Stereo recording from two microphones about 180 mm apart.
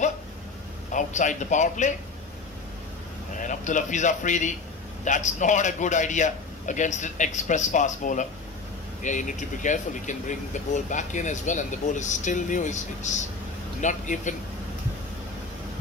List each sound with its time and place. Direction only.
0.9 s speech: 45° left (ahead or behind)
3.3 s speech: 45° left (ahead or behind)